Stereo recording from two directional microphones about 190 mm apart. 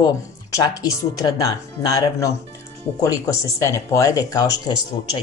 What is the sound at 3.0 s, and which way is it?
Speech, 15° left (ahead or behind).